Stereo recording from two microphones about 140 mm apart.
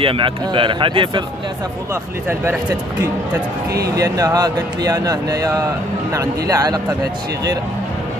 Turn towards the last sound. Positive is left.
turn(degrees=-25)  # may be behind; listen again after turning